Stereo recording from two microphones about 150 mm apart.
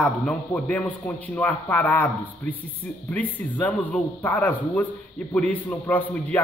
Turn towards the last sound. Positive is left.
turn(degrees=10)  # may be behind; listen again after turning